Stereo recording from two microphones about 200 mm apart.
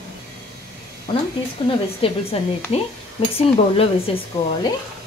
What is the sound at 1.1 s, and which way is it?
A woman's voice, 25° left (ahead or behind).